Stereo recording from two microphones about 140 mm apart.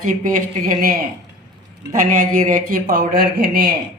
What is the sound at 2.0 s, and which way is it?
A man's voice, 70° right (ahead or behind).